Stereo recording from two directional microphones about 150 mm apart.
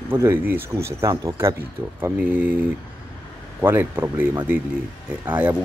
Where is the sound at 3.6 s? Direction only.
15° right (ahead or behind).